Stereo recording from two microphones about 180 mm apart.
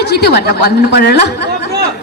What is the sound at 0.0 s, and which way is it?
A woman's voice, 65° left (ahead or behind).